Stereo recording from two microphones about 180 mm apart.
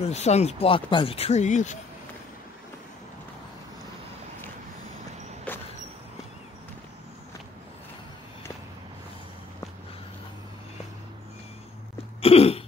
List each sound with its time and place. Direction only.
0.1 s speech: 35° left (ahead or behind)
12.2 s throat clearing: 35° left (ahead or behind)